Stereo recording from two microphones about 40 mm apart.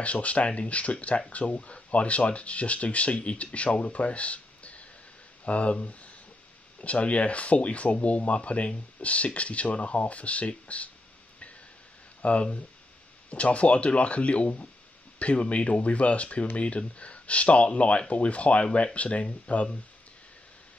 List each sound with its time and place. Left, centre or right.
0.0 s speech: left
12.2 s speech: left